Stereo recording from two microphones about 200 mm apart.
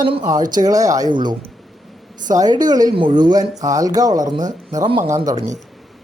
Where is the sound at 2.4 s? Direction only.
20° right (ahead or behind).